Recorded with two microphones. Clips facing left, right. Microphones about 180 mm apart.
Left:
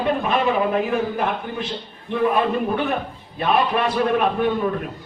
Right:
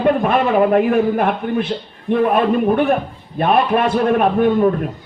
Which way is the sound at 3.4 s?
50° right (ahead or behind).